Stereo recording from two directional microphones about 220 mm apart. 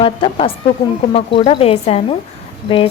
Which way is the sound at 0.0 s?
25° left (ahead or behind).